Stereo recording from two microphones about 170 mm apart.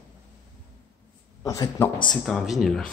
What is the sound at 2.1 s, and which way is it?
Speech, centre (ahead or behind).